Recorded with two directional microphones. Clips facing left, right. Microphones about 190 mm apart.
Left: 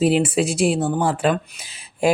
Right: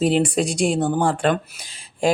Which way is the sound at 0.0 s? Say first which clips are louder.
Left 1 dB; 5° left (ahead or behind).